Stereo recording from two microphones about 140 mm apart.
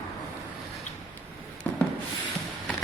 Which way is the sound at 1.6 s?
10° left (ahead or behind).